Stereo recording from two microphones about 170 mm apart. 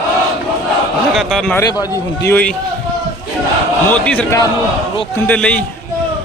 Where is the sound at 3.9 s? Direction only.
5° left (ahead or behind).